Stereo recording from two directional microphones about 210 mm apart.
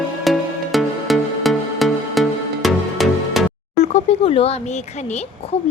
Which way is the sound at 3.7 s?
30° left (ahead or behind).